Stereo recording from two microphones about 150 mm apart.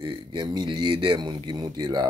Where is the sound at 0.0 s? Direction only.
30° right (ahead or behind).